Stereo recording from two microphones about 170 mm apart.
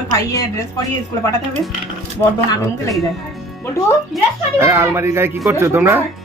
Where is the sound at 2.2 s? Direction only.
20° left (ahead or behind).